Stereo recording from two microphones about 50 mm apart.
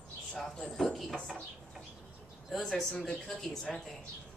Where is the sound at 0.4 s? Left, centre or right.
Centre.